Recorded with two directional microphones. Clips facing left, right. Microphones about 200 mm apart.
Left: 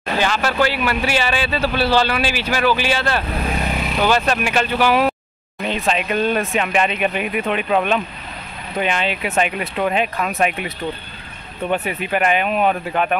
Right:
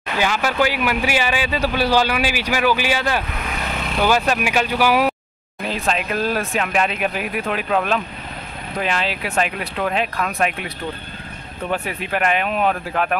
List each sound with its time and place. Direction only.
0.2 s speech: 10° right (ahead or behind)
3.3 s vehicle: 30° left (ahead or behind)
3.7 s vehicle: 10° left (ahead or behind)
4.0 s speech: 10° right (ahead or behind)
11.7 s speech: centre (ahead or behind)